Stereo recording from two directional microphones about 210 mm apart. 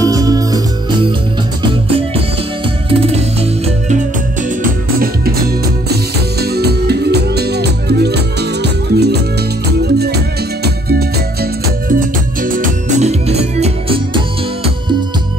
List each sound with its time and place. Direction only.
0.0 s music: 15° right (ahead or behind)
6.4 s music: 50° right (ahead or behind); by 15.0 s 25° right (ahead or behind)